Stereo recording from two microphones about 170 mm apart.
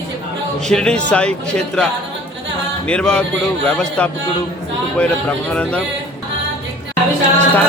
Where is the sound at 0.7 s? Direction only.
5° left (ahead or behind).